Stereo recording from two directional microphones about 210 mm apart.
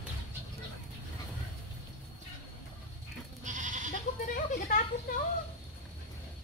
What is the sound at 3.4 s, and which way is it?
Goat, 35° right (ahead or behind).